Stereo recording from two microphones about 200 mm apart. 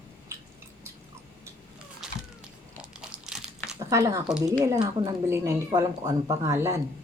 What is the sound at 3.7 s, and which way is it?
Speech, 15° right (ahead or behind).